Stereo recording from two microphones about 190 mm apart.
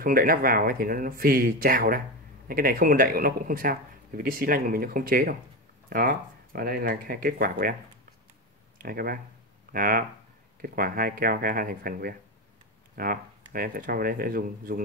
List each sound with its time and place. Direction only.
0.0 s speech: 50° right (ahead or behind)
8.7 s speech: 50° right (ahead or behind)